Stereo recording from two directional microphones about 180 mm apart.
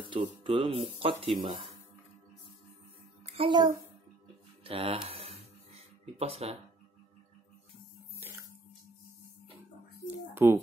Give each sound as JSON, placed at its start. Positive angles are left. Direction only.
{"t": 0.1, "sound": "speech", "side_deg": -30}
{"t": 3.3, "sound": "a child's voice", "side_deg": -30}
{"t": 4.6, "sound": "a sound", "side_deg": -30}
{"t": 10.0, "sound": "speech", "side_deg": -10}